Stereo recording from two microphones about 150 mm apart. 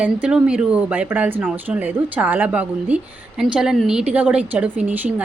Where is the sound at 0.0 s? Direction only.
5° right (ahead or behind).